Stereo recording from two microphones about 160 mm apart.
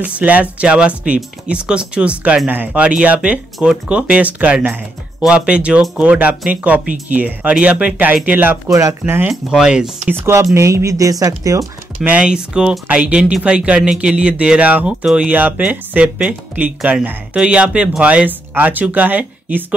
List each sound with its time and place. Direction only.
0.0 s speech: 10° right (ahead or behind)
9.3 s speech: 5° right (ahead or behind)
10.2 s speech: 20° right (ahead or behind)
12.1 s speech: 5° right (ahead or behind)